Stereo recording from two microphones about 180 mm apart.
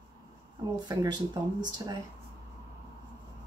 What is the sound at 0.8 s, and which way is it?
Speech, 20° right (ahead or behind).